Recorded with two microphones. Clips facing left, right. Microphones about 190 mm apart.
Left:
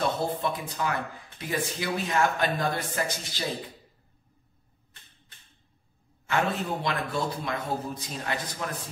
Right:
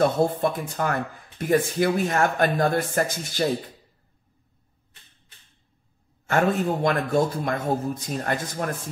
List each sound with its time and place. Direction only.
0.0 s speech: 50° right (ahead or behind)
6.2 s speech: 45° right (ahead or behind)